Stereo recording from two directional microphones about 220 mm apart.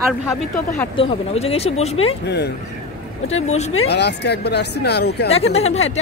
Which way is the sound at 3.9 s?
50° left (ahead or behind).